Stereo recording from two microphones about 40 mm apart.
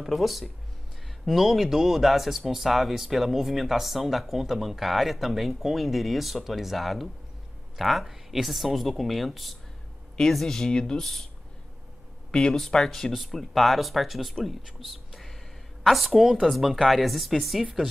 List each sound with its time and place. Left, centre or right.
0.0 s speech: centre
10.3 s speech: centre
12.3 s speech: left
13.1 s speech: centre